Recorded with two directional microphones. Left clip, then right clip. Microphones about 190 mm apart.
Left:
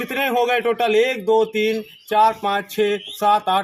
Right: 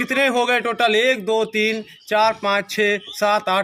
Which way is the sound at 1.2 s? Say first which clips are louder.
Left 2 dB; 70° right (ahead or behind).